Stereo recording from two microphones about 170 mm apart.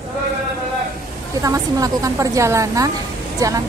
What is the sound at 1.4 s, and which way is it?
A woman's voice, 20° right (ahead or behind).